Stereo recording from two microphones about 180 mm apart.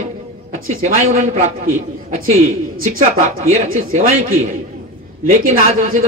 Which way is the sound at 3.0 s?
45° right (ahead or behind).